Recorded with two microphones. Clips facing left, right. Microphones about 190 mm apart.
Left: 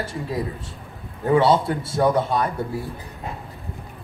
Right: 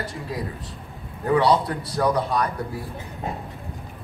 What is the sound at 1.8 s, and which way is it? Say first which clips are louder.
Speech: left 3 dB; 25° left (ahead or behind).